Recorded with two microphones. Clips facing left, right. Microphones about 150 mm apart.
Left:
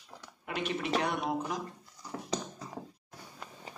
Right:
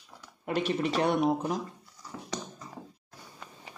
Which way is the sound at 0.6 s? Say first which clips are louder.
Right 4 dB; 35° right (ahead or behind).